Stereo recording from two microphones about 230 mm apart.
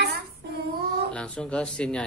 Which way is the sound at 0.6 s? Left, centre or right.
Right.